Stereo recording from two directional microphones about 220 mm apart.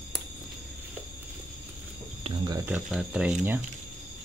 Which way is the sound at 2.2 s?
20° right (ahead or behind).